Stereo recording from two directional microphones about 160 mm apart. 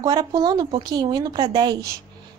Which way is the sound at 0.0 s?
25° right (ahead or behind).